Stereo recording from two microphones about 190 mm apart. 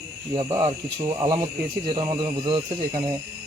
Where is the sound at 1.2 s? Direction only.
25° right (ahead or behind).